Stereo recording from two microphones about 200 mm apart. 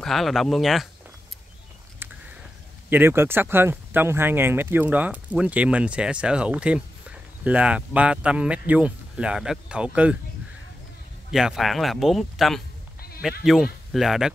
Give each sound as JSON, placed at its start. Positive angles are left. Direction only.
{"t": 0.0, "sound": "speech", "side_deg": 0}
{"t": 2.9, "sound": "speech", "side_deg": -10}
{"t": 11.3, "sound": "speech", "side_deg": 0}